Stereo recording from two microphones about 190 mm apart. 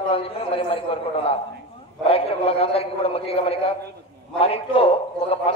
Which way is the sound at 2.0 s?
30° left (ahead or behind).